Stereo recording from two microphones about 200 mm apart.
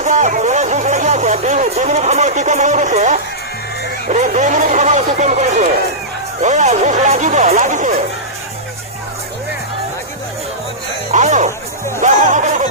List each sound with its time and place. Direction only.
0.0 s speech: 35° right (ahead or behind)
11.1 s music: 35° right (ahead or behind)